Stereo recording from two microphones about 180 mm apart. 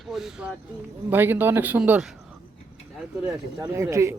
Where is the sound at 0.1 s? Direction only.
Centre (ahead or behind).